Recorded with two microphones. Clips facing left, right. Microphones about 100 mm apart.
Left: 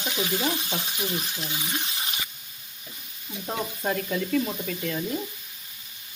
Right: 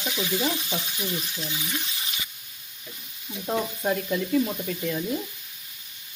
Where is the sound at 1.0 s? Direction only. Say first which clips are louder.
Left 1 dB; 35° left (ahead or behind).